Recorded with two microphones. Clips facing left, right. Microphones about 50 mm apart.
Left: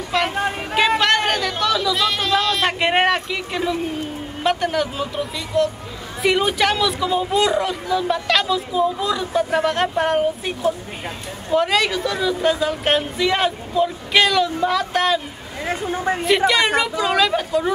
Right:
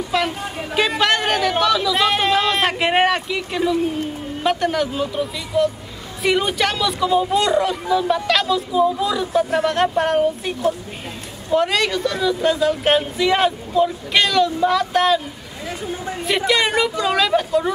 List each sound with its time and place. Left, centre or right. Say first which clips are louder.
0.1 s speech: even; centre
0.7 s a sound: left 1 dB; centre
1.6 s chatter: right 2 dB; centre
2.0 s a sound: right 3 dB; centre
2.6 s speech: right 1 dB; centre
15.6 s speech: left 5 dB; left
16.3 s speech: left 1 dB; centre